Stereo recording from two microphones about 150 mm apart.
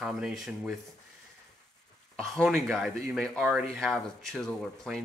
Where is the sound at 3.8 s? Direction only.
5° left (ahead or behind).